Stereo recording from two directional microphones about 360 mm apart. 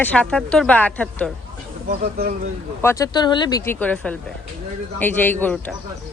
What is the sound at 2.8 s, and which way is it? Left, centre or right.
Speech, centre.